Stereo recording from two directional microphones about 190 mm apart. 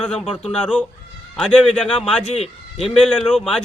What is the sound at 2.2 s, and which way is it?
Speech, 35° left (ahead or behind).